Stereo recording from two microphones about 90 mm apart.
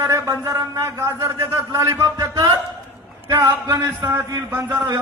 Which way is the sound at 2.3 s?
45° right (ahead or behind).